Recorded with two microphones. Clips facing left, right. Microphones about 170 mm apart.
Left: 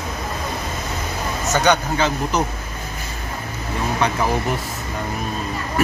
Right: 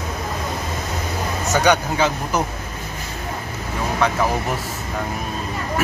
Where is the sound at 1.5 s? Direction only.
10° right (ahead or behind).